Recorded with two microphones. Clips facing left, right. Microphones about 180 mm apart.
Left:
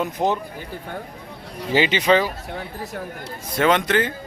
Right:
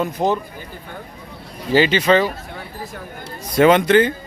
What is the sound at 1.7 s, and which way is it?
Speech, 15° left (ahead or behind).